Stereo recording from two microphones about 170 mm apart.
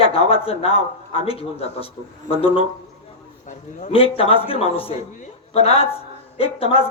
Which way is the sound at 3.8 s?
40° left (ahead or behind).